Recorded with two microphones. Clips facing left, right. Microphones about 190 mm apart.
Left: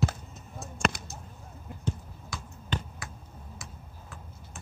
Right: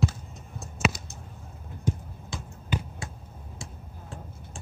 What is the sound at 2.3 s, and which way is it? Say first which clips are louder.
Basketball bounce: right 2 dB; 25° right (ahead or behind).